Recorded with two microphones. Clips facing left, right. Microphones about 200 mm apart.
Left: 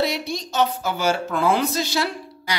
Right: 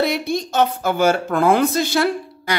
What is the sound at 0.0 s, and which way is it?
A woman's voice, 55° right (ahead or behind).